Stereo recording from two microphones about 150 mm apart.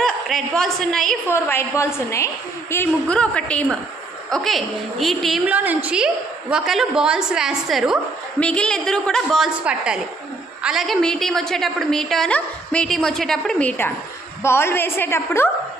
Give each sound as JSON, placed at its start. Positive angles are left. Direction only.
{"t": 0.0, "sound": "a woman's voice", "side_deg": 0}
{"t": 1.3, "sound": "a woman's voice", "side_deg": 15}
{"t": 5.5, "sound": "a woman's voice", "side_deg": -10}